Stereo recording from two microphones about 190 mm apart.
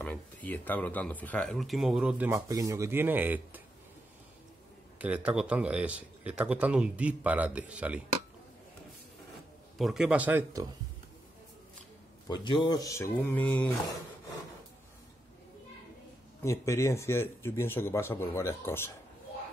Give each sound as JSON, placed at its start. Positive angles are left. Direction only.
{"t": 0.0, "sound": "speech", "side_deg": 10}
{"t": 4.9, "sound": "a man's voice", "side_deg": -5}
{"t": 9.8, "sound": "a man's voice", "side_deg": 0}
{"t": 12.3, "sound": "speech", "side_deg": 25}
{"t": 16.4, "sound": "speech", "side_deg": 15}